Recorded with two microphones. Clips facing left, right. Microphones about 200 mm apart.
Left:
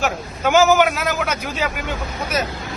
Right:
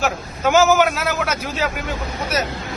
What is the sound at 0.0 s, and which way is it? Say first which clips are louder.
Speech: right 1 dB; 5° right (ahead or behind).